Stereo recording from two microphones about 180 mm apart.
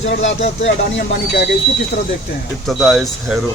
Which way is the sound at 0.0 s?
90° left.